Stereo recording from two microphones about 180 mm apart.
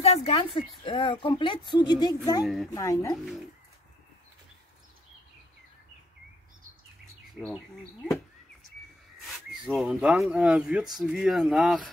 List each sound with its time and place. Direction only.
0.0 s a woman's voice: 30° left (ahead or behind)
2.4 s speech: centre (ahead or behind)
2.7 s speech: 15° left (ahead or behind)
7.2 s speech: centre (ahead or behind)
9.7 s speech: centre (ahead or behind)